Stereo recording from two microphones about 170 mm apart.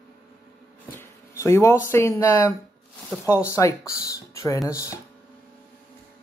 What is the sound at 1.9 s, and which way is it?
Speech, 15° left (ahead or behind).